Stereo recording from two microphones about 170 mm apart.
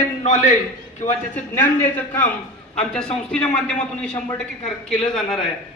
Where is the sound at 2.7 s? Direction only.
5° left (ahead or behind).